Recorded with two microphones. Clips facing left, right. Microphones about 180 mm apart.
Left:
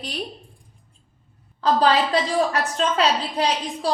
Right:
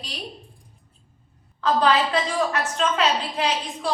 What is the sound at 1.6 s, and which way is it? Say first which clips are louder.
A woman's voice: left 1 dB; 35° left (ahead or behind).